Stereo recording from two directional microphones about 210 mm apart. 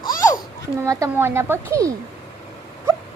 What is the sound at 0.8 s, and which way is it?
Speech, 15° right (ahead or behind).